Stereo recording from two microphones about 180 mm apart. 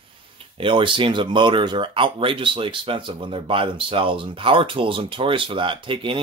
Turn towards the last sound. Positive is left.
turn(degrees=-30)  # may be behind; listen again after turning